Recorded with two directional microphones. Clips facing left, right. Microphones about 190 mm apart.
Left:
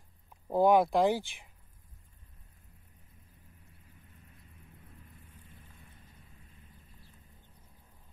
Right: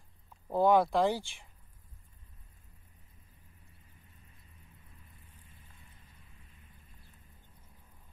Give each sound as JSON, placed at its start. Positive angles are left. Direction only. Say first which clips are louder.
{"t": 0.3, "sound": "speech", "louder": "left 1 dB", "side_deg": 15}